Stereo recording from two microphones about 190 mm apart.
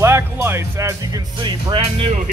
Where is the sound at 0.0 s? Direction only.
10° right (ahead or behind); by 2.1 s 30° right (ahead or behind).